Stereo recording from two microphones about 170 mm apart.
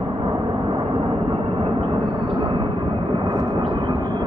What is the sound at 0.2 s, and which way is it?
Vehicle, 30° right (ahead or behind).